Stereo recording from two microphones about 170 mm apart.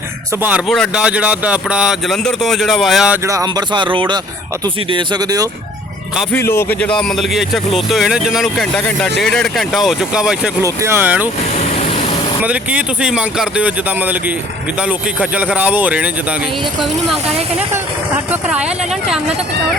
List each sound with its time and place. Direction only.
0.7 s speech: centre (ahead or behind)
3.2 s speech: 20° right (ahead or behind)
6.3 s speech: 15° left (ahead or behind); by 10.5 s 5° right (ahead or behind)
10.6 s speech: 15° right (ahead or behind)
12.4 s speech: 10° right (ahead or behind)
18.3 s speech: 5° right (ahead or behind)